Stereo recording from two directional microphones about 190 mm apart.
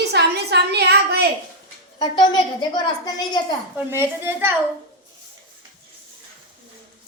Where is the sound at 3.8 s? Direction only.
10° right (ahead or behind).